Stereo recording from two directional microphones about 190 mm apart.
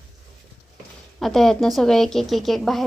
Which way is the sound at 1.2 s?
Centre (ahead or behind).